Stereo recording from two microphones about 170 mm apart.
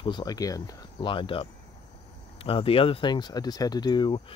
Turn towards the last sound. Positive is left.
turn(degrees=25)  # may be behind; listen again after turning